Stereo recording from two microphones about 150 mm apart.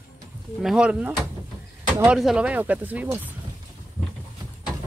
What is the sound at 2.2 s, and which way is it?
Speech, 5° right (ahead or behind).